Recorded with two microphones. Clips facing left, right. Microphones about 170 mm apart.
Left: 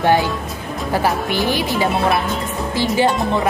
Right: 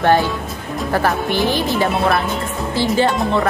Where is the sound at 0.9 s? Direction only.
15° left (ahead or behind).